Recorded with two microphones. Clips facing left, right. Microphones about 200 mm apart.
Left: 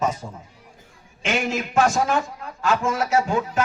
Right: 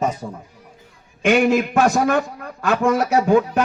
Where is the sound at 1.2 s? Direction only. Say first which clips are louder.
Right 9 dB; 55° right (ahead or behind).